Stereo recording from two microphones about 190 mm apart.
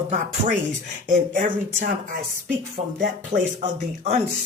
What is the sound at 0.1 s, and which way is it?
Speech, 45° right (ahead or behind).